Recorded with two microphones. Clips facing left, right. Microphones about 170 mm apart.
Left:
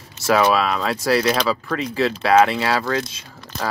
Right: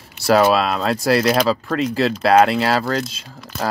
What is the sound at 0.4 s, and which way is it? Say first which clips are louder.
Speech: right 1 dB; 5° right (ahead or behind).